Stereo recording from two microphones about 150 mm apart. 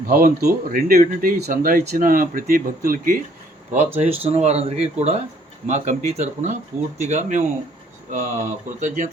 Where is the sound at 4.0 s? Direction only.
45° right (ahead or behind).